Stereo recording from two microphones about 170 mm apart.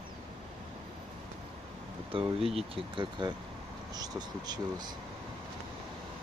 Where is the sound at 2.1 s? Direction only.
35° right (ahead or behind).